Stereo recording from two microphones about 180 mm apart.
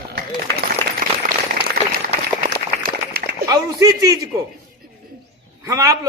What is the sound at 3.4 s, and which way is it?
A woman's voice, 20° right (ahead or behind).